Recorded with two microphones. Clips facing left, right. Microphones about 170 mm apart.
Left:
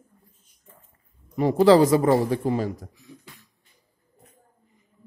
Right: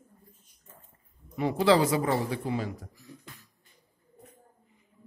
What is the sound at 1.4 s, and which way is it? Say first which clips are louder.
A man's voice: left 7 dB; 40° left (ahead or behind).